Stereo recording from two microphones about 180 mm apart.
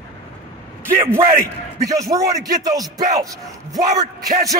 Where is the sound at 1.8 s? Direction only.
20° right (ahead or behind).